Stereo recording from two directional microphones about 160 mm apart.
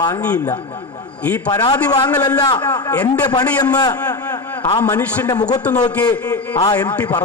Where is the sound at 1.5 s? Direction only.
25° left (ahead or behind).